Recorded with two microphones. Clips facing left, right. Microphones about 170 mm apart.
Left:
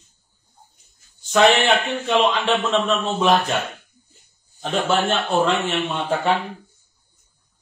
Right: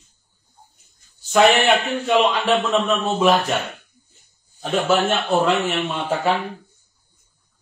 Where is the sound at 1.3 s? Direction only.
10° right (ahead or behind).